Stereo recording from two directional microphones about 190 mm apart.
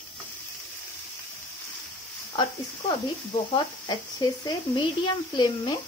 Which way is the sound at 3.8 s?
20° left (ahead or behind).